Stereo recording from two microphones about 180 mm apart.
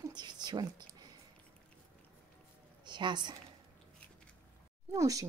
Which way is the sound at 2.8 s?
25° right (ahead or behind).